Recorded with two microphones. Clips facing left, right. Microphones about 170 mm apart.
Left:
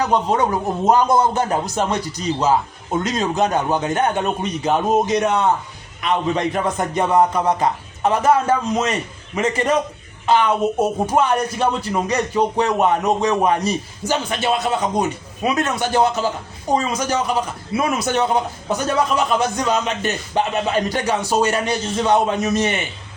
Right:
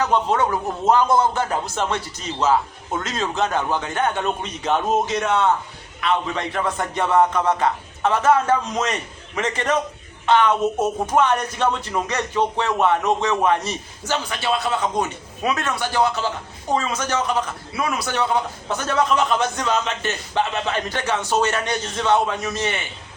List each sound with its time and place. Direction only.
0.0 s a man's voice: 15° left (ahead or behind)
2.0 s speech: 35° left (ahead or behind)
2.4 s a man's voice: 15° left (ahead or behind)
17.7 s a man's voice: 25° left (ahead or behind)